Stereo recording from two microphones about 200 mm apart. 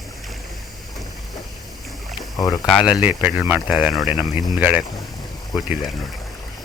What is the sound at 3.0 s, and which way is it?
Speech, 10° right (ahead or behind).